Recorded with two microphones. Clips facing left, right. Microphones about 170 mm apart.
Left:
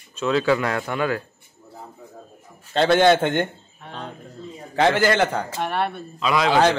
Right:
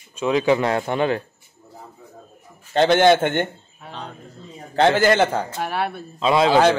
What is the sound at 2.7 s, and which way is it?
Speech, 15° right (ahead or behind).